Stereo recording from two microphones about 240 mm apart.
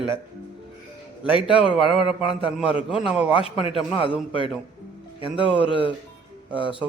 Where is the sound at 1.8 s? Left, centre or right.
Left.